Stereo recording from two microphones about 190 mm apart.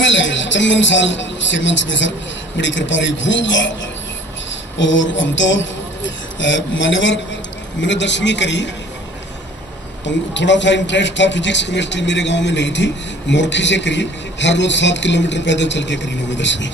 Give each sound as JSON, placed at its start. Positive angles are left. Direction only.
{"t": 0.0, "sound": "a man's voice", "side_deg": 75}
{"t": 4.7, "sound": "a man's voice", "side_deg": 75}
{"t": 10.0, "sound": "a man's voice", "side_deg": 70}